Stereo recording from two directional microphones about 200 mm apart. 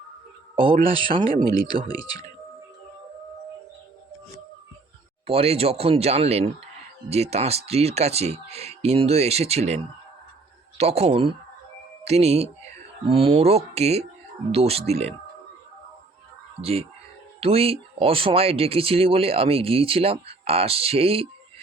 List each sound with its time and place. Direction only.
0.5 s speech: 25° right (ahead or behind)
5.2 s speech: 30° right (ahead or behind)
16.6 s speech: 30° right (ahead or behind)